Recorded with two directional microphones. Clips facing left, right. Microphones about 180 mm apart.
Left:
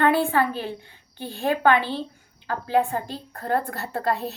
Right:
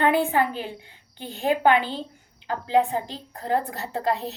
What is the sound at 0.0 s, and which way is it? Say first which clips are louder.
A woman's voice: left 1 dB; 15° right (ahead or behind).